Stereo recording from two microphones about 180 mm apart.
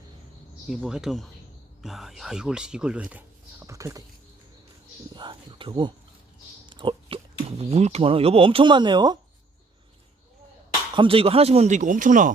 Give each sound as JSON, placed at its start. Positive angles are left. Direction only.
{"t": 0.7, "sound": "speech", "side_deg": -5}
{"t": 3.7, "sound": "speech", "side_deg": -15}
{"t": 5.1, "sound": "speech", "side_deg": -25}
{"t": 6.7, "sound": "a sound", "side_deg": -25}
{"t": 7.6, "sound": "speech", "side_deg": -35}
{"t": 10.9, "sound": "speech", "side_deg": -30}